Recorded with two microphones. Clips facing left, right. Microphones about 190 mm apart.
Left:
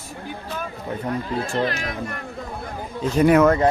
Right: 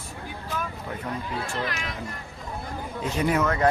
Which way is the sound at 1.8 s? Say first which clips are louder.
Left 6 dB; 55° left (ahead or behind).